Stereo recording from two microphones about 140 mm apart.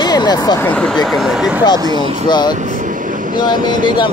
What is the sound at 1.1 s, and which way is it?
Speech, centre (ahead or behind).